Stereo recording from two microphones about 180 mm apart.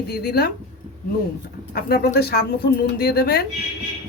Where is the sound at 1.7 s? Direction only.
60° left (ahead or behind).